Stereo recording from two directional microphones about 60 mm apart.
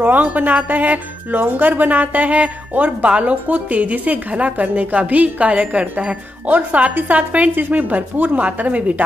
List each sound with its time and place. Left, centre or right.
0.0 s speech: right